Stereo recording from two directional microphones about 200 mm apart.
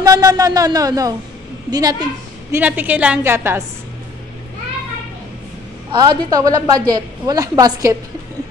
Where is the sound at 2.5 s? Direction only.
10° right (ahead or behind).